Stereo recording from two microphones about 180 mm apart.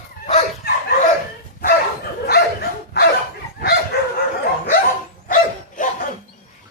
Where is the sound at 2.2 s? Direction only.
60° left (ahead or behind).